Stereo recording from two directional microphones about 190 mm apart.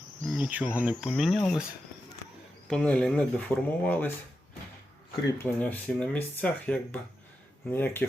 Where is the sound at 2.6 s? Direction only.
5° left (ahead or behind).